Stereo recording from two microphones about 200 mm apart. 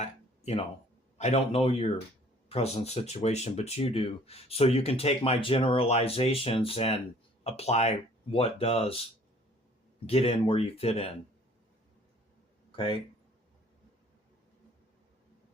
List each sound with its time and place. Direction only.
0.0 s a sound: 35° left (ahead or behind)
1.2 s speech: 30° left (ahead or behind)
10.1 s speech: 30° left (ahead or behind)
12.7 s speech: 25° left (ahead or behind)